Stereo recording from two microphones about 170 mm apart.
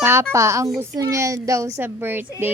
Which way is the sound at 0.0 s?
15° right (ahead or behind).